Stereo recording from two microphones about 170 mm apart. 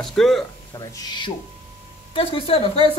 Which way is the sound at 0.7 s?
20° left (ahead or behind).